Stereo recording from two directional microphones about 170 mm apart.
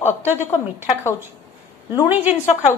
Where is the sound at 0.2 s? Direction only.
10° right (ahead or behind).